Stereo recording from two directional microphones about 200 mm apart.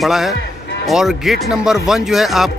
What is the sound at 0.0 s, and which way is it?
Speech, centre (ahead or behind).